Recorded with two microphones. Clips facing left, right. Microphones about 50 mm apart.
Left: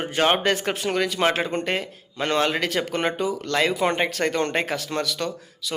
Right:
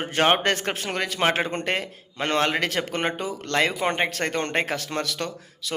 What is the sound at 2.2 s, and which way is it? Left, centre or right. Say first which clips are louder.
A man's voice: left 1 dB; right.